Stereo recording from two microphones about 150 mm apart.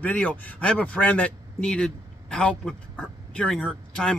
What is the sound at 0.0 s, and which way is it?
A man's voice, 10° left (ahead or behind).